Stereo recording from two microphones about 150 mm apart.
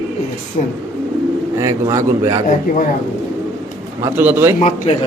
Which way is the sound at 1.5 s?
20° right (ahead or behind).